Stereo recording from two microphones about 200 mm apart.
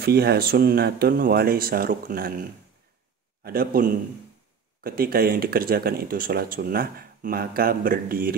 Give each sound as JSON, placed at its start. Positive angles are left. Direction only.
{"t": 0.0, "sound": "speech", "side_deg": -50}
{"t": 3.4, "sound": "speech", "side_deg": -45}